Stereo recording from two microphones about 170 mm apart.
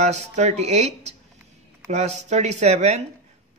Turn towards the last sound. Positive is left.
turn(degrees=-40)  # may be behind; listen again after turning